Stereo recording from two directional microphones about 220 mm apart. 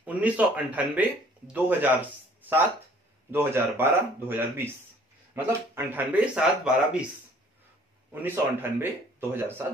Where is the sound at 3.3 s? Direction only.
10° right (ahead or behind).